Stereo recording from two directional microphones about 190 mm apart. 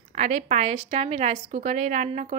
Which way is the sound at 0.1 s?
40° right (ahead or behind).